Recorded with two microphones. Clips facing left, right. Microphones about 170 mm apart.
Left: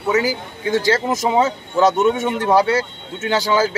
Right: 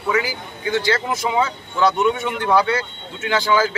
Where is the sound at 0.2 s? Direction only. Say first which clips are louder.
Left 5 dB; 40° left (ahead or behind).